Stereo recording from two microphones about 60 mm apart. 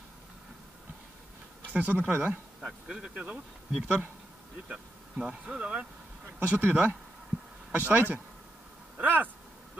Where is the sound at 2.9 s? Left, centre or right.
Centre.